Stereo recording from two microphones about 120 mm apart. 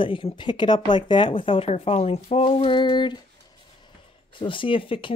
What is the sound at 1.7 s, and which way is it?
Speech, 60° left (ahead or behind).